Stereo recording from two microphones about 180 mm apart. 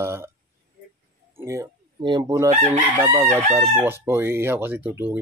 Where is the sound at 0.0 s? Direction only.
15° right (ahead or behind).